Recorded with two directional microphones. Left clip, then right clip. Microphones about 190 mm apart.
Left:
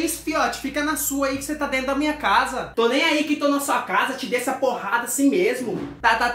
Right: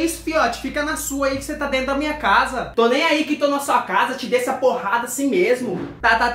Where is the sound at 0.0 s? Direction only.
Centre (ahead or behind).